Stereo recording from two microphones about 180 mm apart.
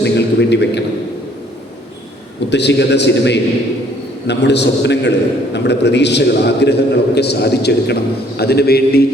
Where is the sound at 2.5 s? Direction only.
70° left (ahead or behind).